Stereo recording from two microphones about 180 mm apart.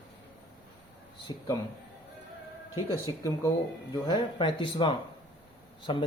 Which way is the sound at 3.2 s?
20° left (ahead or behind).